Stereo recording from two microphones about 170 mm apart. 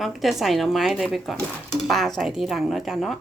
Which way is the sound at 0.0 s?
Centre (ahead or behind).